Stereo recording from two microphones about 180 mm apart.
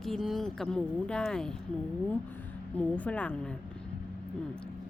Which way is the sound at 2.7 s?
10° left (ahead or behind).